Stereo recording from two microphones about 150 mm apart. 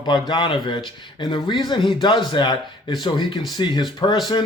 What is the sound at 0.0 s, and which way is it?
Speech, 30° left (ahead or behind).